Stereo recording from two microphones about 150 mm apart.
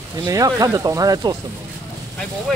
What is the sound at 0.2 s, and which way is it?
Speech, 25° right (ahead or behind).